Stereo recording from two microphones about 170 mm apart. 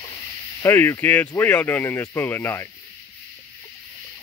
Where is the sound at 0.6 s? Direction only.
15° left (ahead or behind).